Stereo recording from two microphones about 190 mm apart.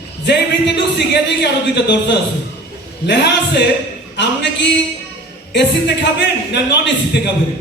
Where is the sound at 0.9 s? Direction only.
60° left (ahead or behind).